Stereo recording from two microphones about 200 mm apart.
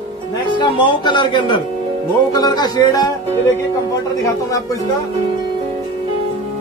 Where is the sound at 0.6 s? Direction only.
25° left (ahead or behind).